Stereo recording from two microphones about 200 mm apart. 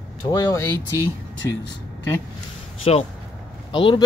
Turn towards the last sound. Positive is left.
turn(degrees=25)  # may be behind; listen again after turning